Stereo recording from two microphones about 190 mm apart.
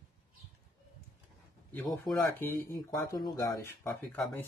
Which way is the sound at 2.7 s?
20° left (ahead or behind).